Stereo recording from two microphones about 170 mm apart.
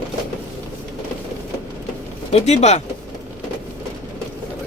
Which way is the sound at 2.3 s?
40° left (ahead or behind).